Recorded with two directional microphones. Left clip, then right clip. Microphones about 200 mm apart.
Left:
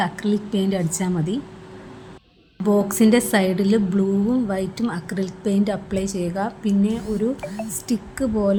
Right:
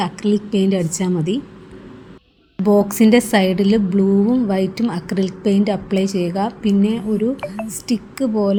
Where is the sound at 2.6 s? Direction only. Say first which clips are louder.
Right 4 dB; 15° right (ahead or behind).